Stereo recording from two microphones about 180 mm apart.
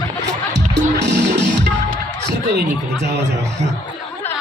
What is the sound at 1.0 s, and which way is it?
Music, 70° right (ahead or behind).